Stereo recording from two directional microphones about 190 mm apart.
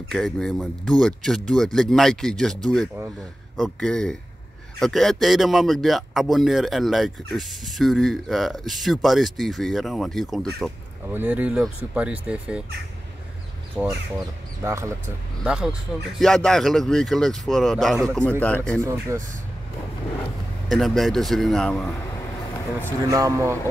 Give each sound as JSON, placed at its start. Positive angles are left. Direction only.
{"t": 0.1, "sound": "speech", "side_deg": 0}
{"t": 11.1, "sound": "speech", "side_deg": -10}
{"t": 13.8, "sound": "speech", "side_deg": -5}
{"t": 18.8, "sound": "speech", "side_deg": -15}
{"t": 20.7, "sound": "speech", "side_deg": 0}
{"t": 23.0, "sound": "speech", "side_deg": -15}